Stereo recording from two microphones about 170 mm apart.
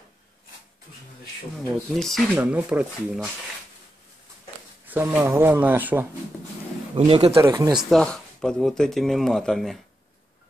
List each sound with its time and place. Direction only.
2.0 s speech: centre (ahead or behind)
2.3 s speech: 10° right (ahead or behind)
4.8 s speech: 10° right (ahead or behind)
7.0 s speech: 30° right (ahead or behind)
7.3 s speech: 20° right (ahead or behind)
7.7 s speech: 5° left (ahead or behind)